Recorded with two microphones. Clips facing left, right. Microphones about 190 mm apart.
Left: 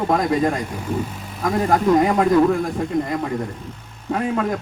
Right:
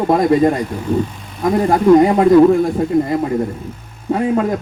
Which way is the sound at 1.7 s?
25° right (ahead or behind).